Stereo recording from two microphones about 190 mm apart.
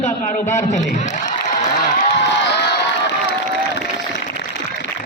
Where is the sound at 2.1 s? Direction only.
65° left (ahead or behind).